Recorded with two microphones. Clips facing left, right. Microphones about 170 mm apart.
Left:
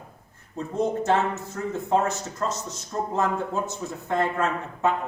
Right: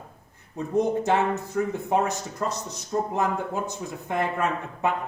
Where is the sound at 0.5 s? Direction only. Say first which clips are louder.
Right 2 dB; 15° right (ahead or behind).